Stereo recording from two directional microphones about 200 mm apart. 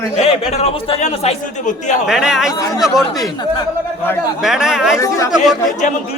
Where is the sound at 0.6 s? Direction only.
30° left (ahead or behind).